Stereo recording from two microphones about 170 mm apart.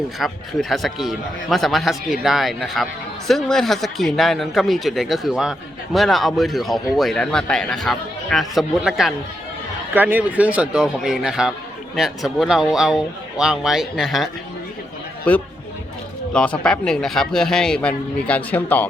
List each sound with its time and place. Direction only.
0.2 s speech: centre (ahead or behind)
15.3 s speech: 5° left (ahead or behind)